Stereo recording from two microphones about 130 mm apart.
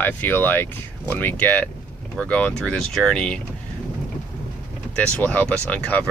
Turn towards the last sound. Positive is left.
turn(degrees=10)  # may be behind; listen again after turning